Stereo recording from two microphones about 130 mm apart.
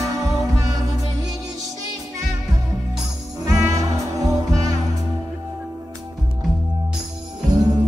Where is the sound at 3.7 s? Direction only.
25° right (ahead or behind).